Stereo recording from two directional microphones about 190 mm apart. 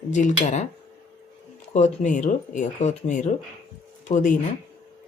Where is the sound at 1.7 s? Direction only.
40° left (ahead or behind).